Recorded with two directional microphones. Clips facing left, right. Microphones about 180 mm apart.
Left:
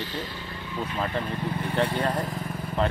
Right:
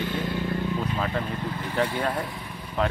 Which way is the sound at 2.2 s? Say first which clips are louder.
Left 4 dB; 45° left (ahead or behind).